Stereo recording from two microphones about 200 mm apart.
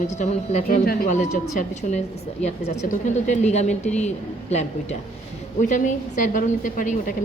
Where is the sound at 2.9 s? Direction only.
35° left (ahead or behind).